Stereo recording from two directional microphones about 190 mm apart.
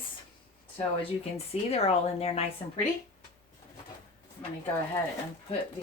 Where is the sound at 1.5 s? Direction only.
35° left (ahead or behind).